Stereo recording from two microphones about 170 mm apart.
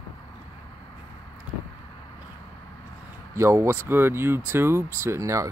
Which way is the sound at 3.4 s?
15° right (ahead or behind).